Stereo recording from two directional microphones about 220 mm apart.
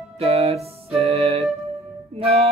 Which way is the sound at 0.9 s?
30° right (ahead or behind).